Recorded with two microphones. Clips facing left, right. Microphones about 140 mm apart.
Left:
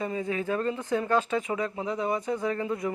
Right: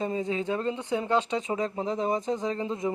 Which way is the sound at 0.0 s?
25° right (ahead or behind).